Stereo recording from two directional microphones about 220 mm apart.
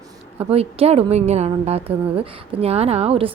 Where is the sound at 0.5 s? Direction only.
25° right (ahead or behind).